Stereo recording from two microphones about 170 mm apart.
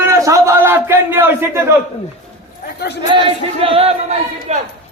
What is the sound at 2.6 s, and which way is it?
Speech, 75° left (ahead or behind).